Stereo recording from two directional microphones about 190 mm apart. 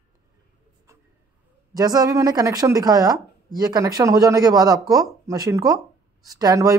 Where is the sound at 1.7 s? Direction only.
20° right (ahead or behind).